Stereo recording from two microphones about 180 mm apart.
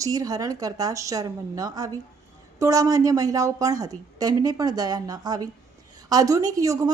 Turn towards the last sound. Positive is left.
turn(degrees=-20)  # may be behind; listen again after turning